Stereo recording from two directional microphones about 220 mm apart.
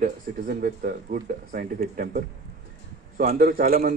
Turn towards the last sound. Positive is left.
turn(degrees=-40)  # may be behind; listen again after turning